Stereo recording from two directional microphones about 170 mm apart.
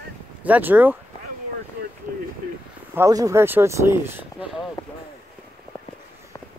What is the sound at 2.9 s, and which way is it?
Speech, 20° right (ahead or behind).